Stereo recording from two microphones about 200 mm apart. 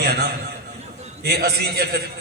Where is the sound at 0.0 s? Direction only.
50° right (ahead or behind).